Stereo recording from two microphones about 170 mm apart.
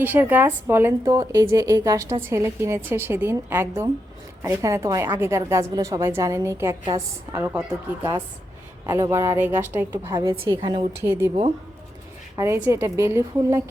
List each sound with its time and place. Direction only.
0.0 s a woman's voice: 10° right (ahead or behind); by 10.8 s 25° right (ahead or behind)
11.0 s a woman's voice: 15° right (ahead or behind)
12.4 s a woman's voice: 15° right (ahead or behind)